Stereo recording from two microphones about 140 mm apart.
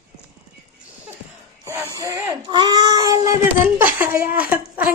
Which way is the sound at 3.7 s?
15° right (ahead or behind).